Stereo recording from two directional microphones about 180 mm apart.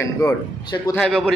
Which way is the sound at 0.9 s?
5° left (ahead or behind).